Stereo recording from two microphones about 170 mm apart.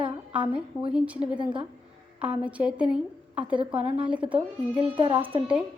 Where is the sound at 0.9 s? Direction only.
5° right (ahead or behind).